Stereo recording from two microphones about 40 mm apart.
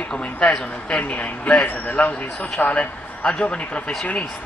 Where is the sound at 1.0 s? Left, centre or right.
Left.